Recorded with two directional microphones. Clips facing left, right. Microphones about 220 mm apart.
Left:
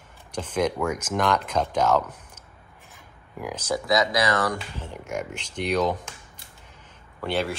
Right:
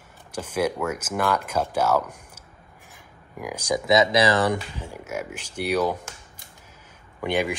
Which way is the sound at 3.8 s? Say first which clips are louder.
Right 4 dB; 25° right (ahead or behind).